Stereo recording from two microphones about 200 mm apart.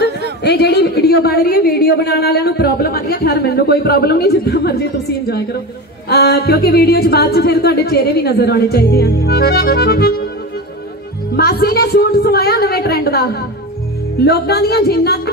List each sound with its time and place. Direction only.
0.4 s a woman's voice: 55° left (ahead or behind)
6.0 s a woman's voice: 50° left (ahead or behind)
11.3 s a woman's voice: 50° left (ahead or behind)